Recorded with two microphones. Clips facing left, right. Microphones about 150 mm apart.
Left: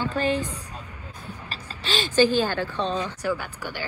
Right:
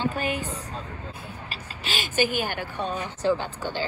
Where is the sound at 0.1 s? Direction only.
10° right (ahead or behind).